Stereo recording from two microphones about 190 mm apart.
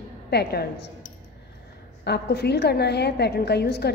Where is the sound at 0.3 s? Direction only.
60° left (ahead or behind).